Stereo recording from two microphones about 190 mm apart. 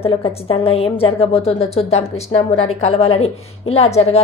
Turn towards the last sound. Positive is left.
turn(degrees=35)  # may be behind; listen again after turning